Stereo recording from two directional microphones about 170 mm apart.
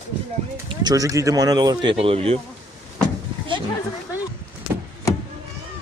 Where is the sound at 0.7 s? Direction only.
25° right (ahead or behind).